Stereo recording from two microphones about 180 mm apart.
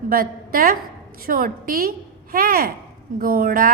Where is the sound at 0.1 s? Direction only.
55° right (ahead or behind).